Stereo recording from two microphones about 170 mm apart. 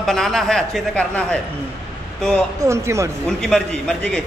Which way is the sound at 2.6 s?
15° right (ahead or behind).